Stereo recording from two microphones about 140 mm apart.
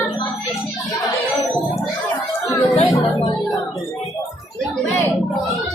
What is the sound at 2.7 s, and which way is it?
Music, 45° left (ahead or behind).